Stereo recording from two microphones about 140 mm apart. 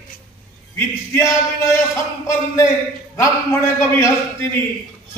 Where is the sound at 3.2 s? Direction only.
20° left (ahead or behind).